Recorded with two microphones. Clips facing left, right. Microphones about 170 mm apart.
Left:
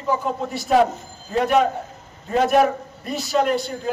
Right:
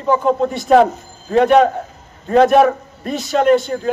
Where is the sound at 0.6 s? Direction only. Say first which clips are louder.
Right 5 dB; 55° right (ahead or behind).